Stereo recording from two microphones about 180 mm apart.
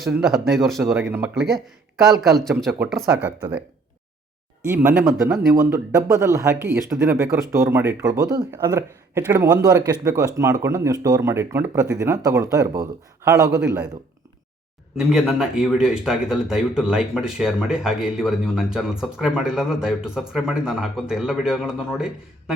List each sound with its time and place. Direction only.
0.0 s speech: centre (ahead or behind)
4.6 s speech: 15° right (ahead or behind)
5.7 s speech: 15° right (ahead or behind)
13.7 s speech: 10° right (ahead or behind)
14.9 s speech: 5° right (ahead or behind)